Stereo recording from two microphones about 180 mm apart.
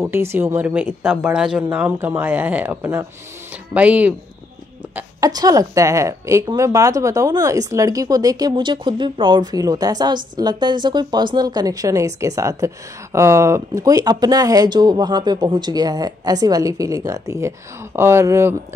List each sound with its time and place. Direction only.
0.0 s speech: 15° right (ahead or behind)
5.2 s a woman's voice: 20° right (ahead or behind)